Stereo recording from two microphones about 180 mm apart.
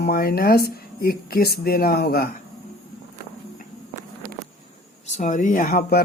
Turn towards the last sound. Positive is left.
turn(degrees=55)  # may be behind; listen again after turning